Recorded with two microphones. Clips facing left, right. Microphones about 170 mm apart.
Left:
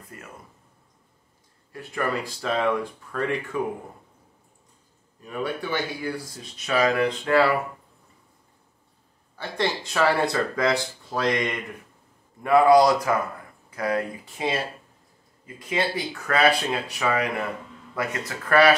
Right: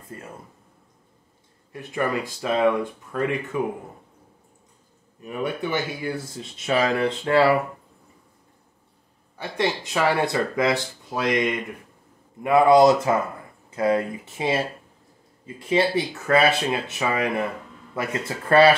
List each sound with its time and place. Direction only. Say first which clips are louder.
0.1 s speech: right 5 dB; 30° right (ahead or behind)
1.7 s speech: right 2 dB; 20° right (ahead or behind)
5.2 s speech: right 2 dB; 20° right (ahead or behind)
9.4 s speech: right 2 dB; 15° right (ahead or behind)